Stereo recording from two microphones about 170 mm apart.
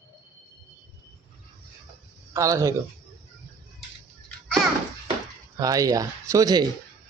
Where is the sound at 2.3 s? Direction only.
20° right (ahead or behind).